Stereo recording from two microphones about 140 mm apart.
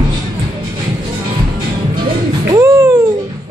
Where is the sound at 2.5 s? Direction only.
20° right (ahead or behind).